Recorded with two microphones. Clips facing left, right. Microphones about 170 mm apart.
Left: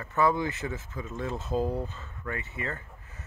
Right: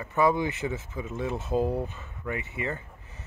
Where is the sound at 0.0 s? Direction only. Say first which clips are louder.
Right 2 dB; 15° right (ahead or behind).